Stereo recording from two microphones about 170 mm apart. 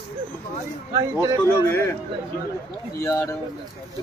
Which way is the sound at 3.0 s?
20° left (ahead or behind).